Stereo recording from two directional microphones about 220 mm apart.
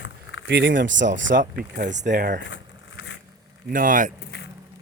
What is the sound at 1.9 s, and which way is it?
Speech, 35° right (ahead or behind).